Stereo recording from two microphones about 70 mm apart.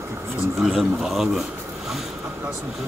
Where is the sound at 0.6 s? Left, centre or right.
Centre.